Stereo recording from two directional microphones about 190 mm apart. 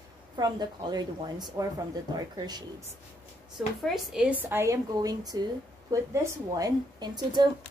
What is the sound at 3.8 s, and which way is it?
A woman's voice, centre (ahead or behind).